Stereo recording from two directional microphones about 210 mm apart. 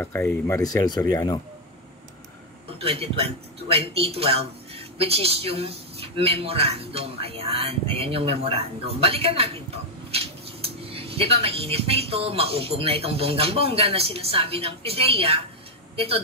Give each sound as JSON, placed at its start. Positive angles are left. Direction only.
{"t": 0.0, "sound": "speech", "side_deg": 10}
{"t": 2.8, "sound": "speech", "side_deg": -25}